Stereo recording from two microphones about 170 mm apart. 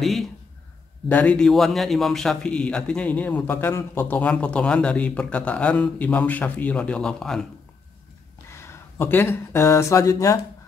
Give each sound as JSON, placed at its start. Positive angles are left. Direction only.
{"t": 0.0, "sound": "a man's voice", "side_deg": 0}
{"t": 8.5, "sound": "speech", "side_deg": 15}